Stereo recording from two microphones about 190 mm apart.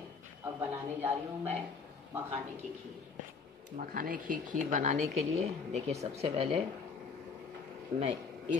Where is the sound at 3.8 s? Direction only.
45° right (ahead or behind); by 6.6 s 30° right (ahead or behind).